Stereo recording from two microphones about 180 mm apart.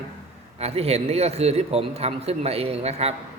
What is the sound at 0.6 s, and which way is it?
Speech, 35° right (ahead or behind).